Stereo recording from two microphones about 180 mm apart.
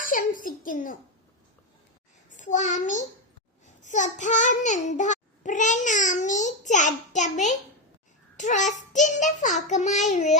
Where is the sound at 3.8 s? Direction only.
45° left (ahead or behind).